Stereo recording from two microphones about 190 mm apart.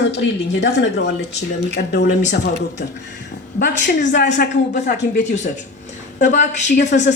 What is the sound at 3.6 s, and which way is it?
Speech, 65° left (ahead or behind).